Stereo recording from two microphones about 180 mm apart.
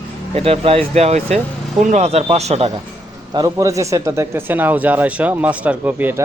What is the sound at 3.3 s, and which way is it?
A man's voice, 20° right (ahead or behind).